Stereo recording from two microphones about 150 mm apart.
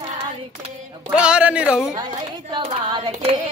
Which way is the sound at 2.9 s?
40° right (ahead or behind).